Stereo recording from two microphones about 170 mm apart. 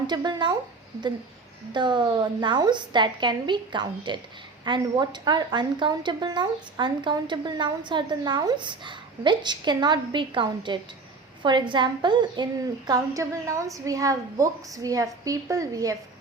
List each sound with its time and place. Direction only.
0.1 s a woman's voice: 25° right (ahead or behind)
1.7 s a woman's voice: 25° right (ahead or behind)